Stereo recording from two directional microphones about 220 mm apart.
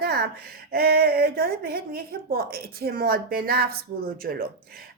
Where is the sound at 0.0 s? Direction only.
50° right (ahead or behind).